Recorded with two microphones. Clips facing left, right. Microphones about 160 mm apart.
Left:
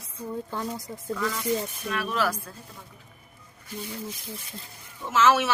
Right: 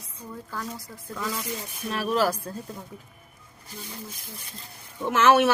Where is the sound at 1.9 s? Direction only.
35° right (ahead or behind).